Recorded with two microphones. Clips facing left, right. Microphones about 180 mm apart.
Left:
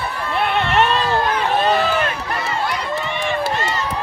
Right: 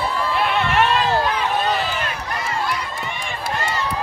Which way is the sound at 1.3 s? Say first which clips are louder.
Left 3 dB; 45° left (ahead or behind).